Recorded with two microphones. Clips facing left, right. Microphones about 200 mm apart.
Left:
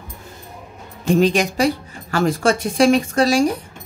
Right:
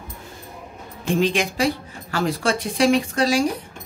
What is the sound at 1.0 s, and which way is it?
A woman's voice, 40° left (ahead or behind).